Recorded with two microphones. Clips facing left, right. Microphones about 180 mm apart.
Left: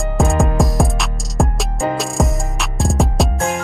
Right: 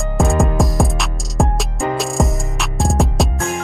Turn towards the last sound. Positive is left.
turn(degrees=0)  # may be behind; listen again after turning